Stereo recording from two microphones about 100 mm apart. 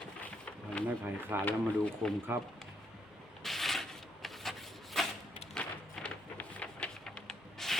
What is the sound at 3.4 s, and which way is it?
Rub, centre (ahead or behind).